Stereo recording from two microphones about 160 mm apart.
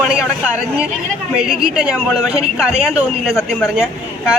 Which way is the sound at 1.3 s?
5° right (ahead or behind).